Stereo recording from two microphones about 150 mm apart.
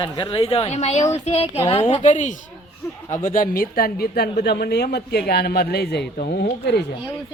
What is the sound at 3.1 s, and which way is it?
A woman's voice, 65° left (ahead or behind).